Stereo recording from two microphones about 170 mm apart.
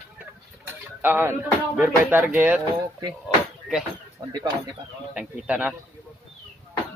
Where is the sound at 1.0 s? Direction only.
10° right (ahead or behind).